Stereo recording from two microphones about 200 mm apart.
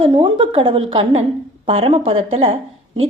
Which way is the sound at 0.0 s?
25° right (ahead or behind).